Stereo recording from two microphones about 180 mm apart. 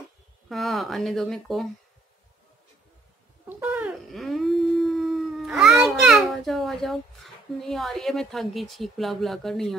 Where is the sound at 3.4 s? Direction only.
10° right (ahead or behind).